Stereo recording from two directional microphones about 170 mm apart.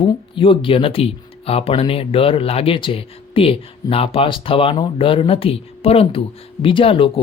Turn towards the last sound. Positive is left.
turn(degrees=30)  # may be behind; listen again after turning